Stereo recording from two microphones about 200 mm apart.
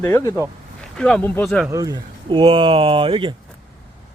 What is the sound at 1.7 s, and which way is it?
Speech, 20° right (ahead or behind).